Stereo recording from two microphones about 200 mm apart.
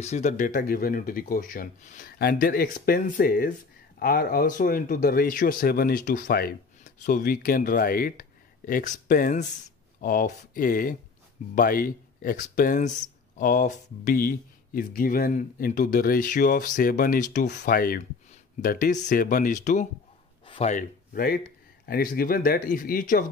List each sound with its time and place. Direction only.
0.0 s speech: 35° left (ahead or behind)